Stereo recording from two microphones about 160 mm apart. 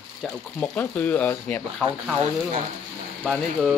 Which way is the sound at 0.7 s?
10° left (ahead or behind).